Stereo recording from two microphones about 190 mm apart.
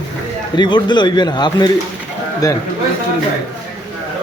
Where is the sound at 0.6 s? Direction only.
25° left (ahead or behind).